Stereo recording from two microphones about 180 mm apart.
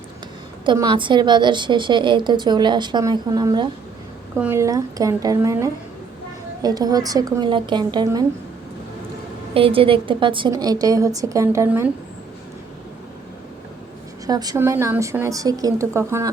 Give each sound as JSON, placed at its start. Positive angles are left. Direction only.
{"t": 0.6, "sound": "a woman's voice", "side_deg": -25}
{"t": 9.6, "sound": "a woman's voice", "side_deg": -30}
{"t": 14.3, "sound": "a woman's voice", "side_deg": -20}